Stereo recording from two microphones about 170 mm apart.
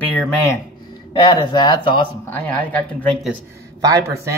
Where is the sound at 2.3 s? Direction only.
10° left (ahead or behind).